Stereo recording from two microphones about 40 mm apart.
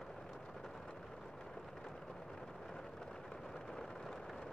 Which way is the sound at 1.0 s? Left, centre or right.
Centre.